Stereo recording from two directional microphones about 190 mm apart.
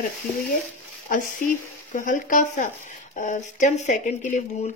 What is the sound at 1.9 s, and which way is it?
Speech, 45° left (ahead or behind).